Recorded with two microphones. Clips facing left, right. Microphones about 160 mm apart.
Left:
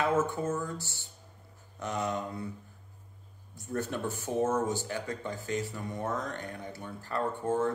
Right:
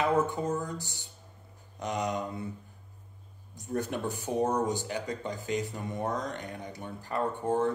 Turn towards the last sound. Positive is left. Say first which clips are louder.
# right 1 dB
turn(degrees=-20)  # may be behind; listen again after turning